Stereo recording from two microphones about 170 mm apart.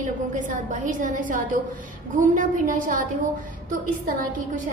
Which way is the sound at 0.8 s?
50° right (ahead or behind).